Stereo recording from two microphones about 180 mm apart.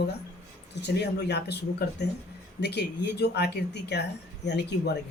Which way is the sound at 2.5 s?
70° left (ahead or behind).